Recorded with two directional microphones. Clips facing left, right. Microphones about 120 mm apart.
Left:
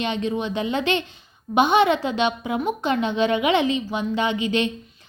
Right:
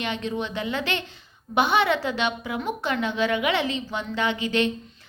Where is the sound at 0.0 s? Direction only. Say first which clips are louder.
Left 4 dB; 20° left (ahead or behind).